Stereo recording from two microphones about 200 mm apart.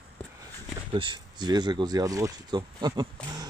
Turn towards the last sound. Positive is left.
turn(degrees=-20)  # may be behind; listen again after turning